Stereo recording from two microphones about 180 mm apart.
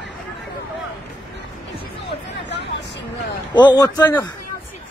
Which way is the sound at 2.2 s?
75° left (ahead or behind).